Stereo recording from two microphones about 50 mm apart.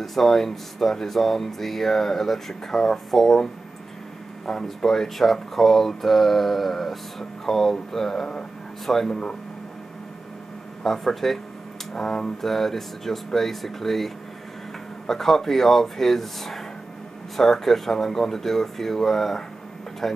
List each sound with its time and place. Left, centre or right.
0.0 s speech: centre
4.5 s speech: centre
10.8 s speech: centre